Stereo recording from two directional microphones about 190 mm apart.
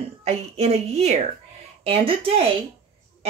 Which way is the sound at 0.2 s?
30° right (ahead or behind).